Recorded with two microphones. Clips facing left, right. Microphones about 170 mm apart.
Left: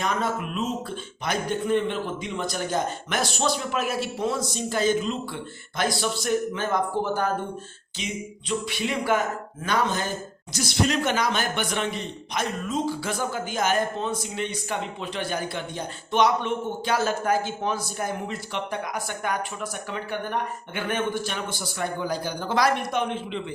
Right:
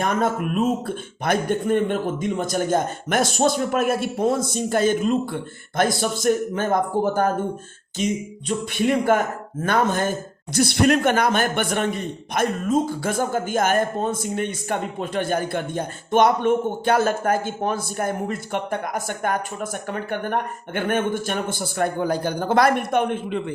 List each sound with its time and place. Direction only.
0.0 s speech: 50° right (ahead or behind)